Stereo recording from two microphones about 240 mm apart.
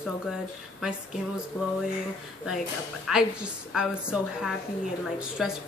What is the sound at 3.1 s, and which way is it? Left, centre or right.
Speech, centre.